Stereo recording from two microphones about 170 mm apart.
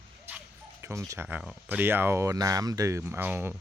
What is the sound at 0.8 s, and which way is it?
Speech, 15° right (ahead or behind).